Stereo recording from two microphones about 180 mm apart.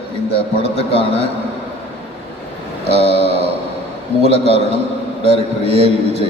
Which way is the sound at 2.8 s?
35° left (ahead or behind).